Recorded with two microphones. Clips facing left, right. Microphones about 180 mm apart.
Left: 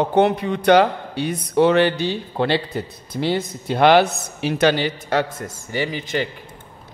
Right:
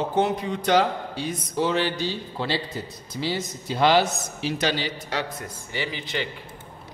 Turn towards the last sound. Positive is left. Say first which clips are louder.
# left 6 dB
turn(degrees=45)  # may be behind; listen again after turning